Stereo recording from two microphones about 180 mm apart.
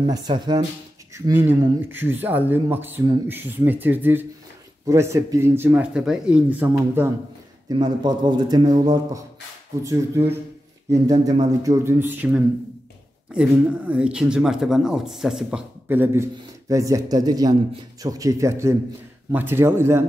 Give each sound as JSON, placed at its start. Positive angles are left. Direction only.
{"t": 0.1, "sound": "a man's voice", "side_deg": -25}
{"t": 7.7, "sound": "a man's voice", "side_deg": -25}
{"t": 11.6, "sound": "speech", "side_deg": -15}